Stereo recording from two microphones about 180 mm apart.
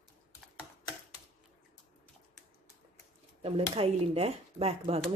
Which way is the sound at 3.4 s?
35° right (ahead or behind).